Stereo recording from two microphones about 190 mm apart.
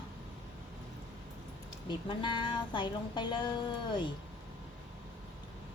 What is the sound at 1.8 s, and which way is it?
Speech, 25° left (ahead or behind).